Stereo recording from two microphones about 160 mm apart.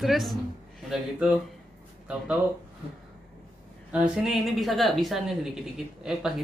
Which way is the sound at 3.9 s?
5° right (ahead or behind).